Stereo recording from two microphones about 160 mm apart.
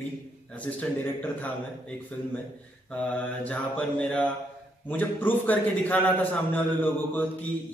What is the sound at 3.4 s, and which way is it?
A man's voice, 10° left (ahead or behind).